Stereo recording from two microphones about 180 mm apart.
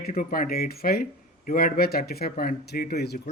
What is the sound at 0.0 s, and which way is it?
A man's voice, 55° left (ahead or behind).